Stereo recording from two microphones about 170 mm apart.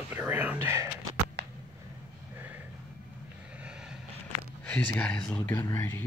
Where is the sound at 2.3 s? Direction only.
10° right (ahead or behind).